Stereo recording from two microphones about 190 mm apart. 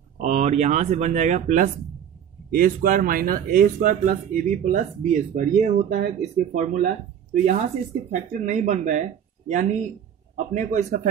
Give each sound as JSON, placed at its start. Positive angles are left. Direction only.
{"t": 0.2, "sound": "speech", "side_deg": -35}
{"t": 8.1, "sound": "speech", "side_deg": -40}